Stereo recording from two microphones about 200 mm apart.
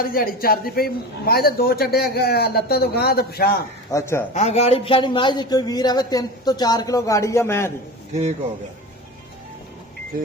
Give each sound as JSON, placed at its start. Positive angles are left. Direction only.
{"t": 0.0, "sound": "a man's voice", "side_deg": 45}
{"t": 3.9, "sound": "speech", "side_deg": 15}
{"t": 4.4, "sound": "a man's voice", "side_deg": 35}